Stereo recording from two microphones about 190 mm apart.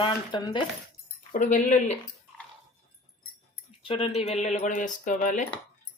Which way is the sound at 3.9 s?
30° left (ahead or behind).